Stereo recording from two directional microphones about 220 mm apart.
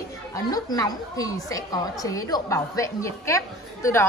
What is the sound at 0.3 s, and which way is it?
A woman's voice, 15° left (ahead or behind).